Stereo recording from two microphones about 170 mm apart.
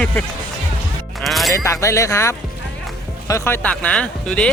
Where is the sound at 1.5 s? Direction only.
15° left (ahead or behind).